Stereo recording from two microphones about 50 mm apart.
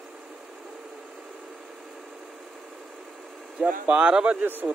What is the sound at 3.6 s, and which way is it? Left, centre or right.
Speech, right.